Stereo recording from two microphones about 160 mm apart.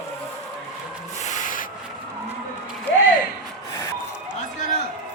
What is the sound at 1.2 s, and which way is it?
Rub, 50° left (ahead or behind).